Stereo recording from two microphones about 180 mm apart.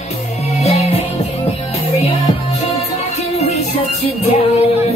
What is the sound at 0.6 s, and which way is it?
Music, 35° left (ahead or behind).